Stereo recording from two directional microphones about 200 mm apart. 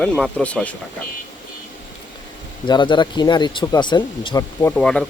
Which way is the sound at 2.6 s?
25° left (ahead or behind).